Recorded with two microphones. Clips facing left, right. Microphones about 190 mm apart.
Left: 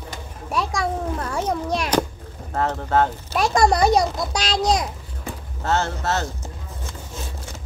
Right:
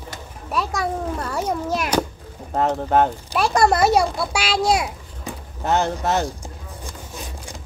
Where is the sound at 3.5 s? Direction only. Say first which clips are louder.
Even; 5° right (ahead or behind).